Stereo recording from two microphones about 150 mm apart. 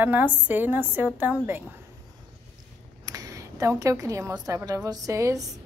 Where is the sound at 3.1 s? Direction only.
25° right (ahead or behind).